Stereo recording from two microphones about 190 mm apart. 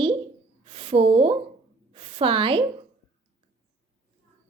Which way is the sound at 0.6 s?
30° right (ahead or behind).